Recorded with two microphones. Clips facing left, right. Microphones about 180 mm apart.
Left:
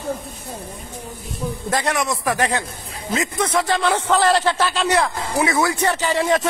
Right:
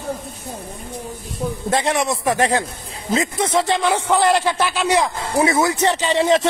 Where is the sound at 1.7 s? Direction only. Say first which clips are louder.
Right 2 dB; 25° right (ahead or behind).